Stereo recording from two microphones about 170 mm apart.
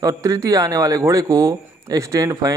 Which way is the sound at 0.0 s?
20° right (ahead or behind).